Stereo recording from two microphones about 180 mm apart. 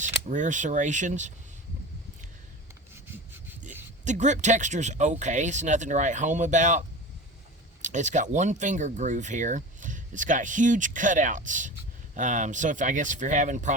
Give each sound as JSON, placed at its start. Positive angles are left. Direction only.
{"t": 0.0, "sound": "speech", "side_deg": -45}
{"t": 2.9, "sound": "rub", "side_deg": -10}
{"t": 4.0, "sound": "speech", "side_deg": -40}